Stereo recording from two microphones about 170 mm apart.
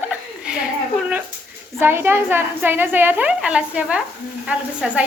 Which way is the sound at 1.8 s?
15° right (ahead or behind).